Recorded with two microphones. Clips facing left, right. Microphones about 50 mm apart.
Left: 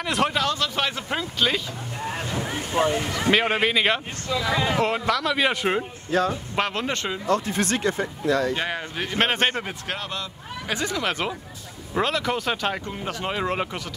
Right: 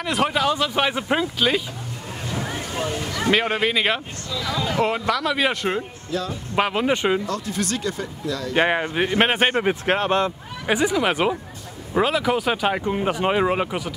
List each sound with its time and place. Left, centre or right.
0.0 s speech: centre
2.4 s a sound: left
3.3 s speech: centre
6.1 s speech: left
6.5 s speech: centre
7.2 s speech: left
8.5 s speech: right
9.2 s speech: centre
9.8 s speech: right
10.7 s speech: centre